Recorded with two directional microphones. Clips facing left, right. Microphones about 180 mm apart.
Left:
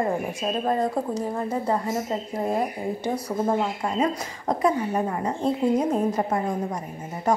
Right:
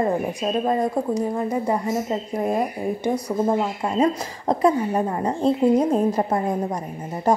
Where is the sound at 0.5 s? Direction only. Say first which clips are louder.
Right 2 dB; 15° right (ahead or behind).